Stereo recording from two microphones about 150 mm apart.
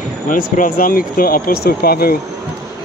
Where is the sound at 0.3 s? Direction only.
65° left (ahead or behind); by 2.1 s 85° left.